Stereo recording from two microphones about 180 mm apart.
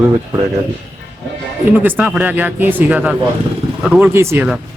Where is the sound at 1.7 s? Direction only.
5° right (ahead or behind).